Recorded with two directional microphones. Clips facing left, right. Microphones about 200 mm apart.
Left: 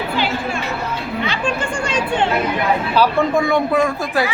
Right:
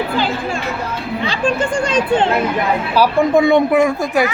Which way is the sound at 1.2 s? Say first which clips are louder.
Right 4 dB; 30° right (ahead or behind).